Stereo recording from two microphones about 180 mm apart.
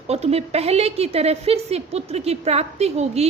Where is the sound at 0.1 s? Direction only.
35° right (ahead or behind).